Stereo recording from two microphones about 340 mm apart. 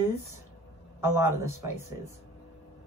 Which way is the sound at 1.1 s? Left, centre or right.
Centre.